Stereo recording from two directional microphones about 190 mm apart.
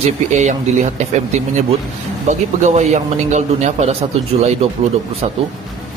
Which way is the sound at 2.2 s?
35° right (ahead or behind).